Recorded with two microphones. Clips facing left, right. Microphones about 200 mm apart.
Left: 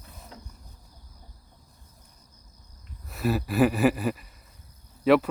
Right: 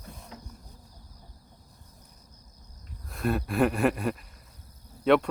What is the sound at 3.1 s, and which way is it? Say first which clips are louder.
Speech: left 2 dB; 5° left (ahead or behind).